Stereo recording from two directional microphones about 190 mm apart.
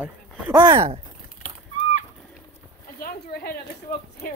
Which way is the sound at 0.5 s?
25° right (ahead or behind).